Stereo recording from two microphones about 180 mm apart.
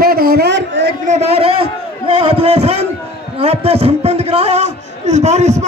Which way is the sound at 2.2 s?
35° right (ahead or behind).